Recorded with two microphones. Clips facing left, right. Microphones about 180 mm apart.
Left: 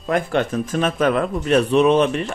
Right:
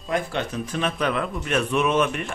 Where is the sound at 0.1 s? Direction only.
55° left (ahead or behind).